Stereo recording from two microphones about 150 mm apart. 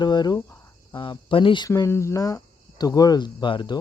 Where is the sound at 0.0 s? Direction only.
30° left (ahead or behind).